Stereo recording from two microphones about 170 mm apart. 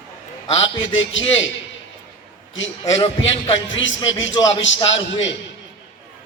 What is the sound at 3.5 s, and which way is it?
Speech, 90° left.